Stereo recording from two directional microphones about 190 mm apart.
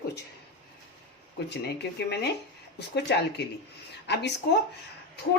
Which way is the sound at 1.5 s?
60° left (ahead or behind).